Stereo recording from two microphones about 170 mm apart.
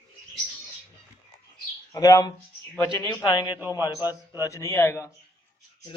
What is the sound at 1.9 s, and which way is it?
Speech, 20° left (ahead or behind).